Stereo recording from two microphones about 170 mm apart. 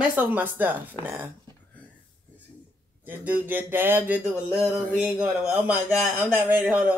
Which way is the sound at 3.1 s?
10° right (ahead or behind).